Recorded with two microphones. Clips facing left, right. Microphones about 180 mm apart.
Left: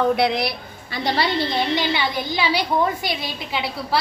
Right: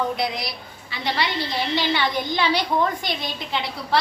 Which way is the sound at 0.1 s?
65° left (ahead or behind).